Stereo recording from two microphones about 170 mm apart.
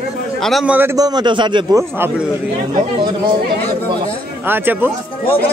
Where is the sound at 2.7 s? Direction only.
25° right (ahead or behind).